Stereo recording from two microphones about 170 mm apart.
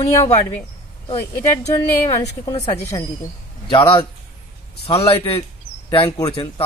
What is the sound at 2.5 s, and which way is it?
Speech, 40° left (ahead or behind).